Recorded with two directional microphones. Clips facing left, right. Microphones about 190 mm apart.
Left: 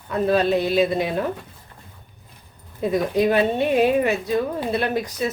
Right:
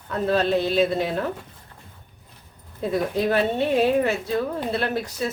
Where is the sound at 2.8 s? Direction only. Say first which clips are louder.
Left 3 dB; 15° left (ahead or behind).